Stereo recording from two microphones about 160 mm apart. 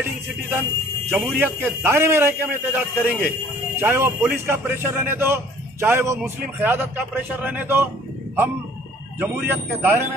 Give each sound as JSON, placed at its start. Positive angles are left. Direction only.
{"t": 0.1, "sound": "a man's voice", "side_deg": -15}
{"t": 9.2, "sound": "a man's voice", "side_deg": -15}